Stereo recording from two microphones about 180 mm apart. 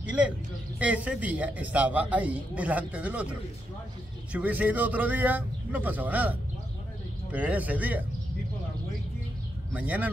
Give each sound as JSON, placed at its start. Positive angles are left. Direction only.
{"t": 0.7, "sound": "a man's voice", "side_deg": -10}
{"t": 9.7, "sound": "speech", "side_deg": -10}